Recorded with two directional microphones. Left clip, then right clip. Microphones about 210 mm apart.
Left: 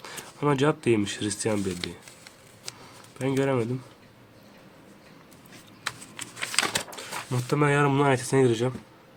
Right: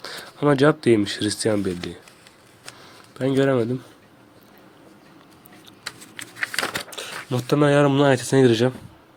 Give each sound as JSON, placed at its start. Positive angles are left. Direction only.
{"t": 0.0, "sound": "speech", "side_deg": -20}
{"t": 3.2, "sound": "speech", "side_deg": -20}
{"t": 6.9, "sound": "speech", "side_deg": -25}